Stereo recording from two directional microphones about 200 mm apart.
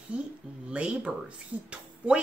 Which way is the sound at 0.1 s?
5° right (ahead or behind).